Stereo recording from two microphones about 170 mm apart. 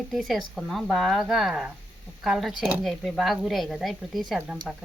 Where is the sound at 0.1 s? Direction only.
Centre (ahead or behind).